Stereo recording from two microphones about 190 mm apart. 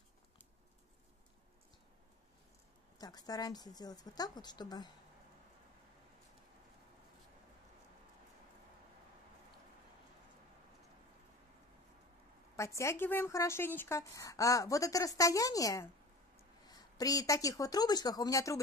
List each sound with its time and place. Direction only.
3.0 s speech: 20° left (ahead or behind)
12.5 s speech: 15° left (ahead or behind)